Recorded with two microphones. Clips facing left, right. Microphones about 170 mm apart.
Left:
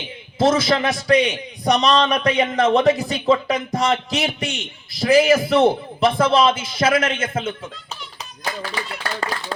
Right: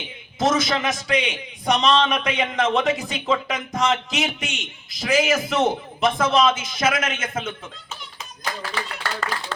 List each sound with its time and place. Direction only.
0.3 s a man's voice: 30° left (ahead or behind)